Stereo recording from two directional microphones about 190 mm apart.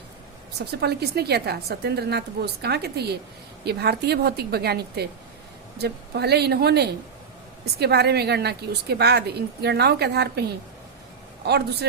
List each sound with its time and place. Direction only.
0.6 s a woman's voice: 60° right (ahead or behind)